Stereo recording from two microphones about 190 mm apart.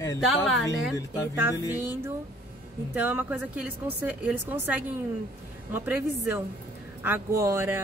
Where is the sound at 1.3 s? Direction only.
15° right (ahead or behind).